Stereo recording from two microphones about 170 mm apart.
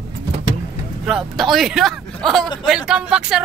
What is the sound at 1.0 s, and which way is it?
Speech, centre (ahead or behind).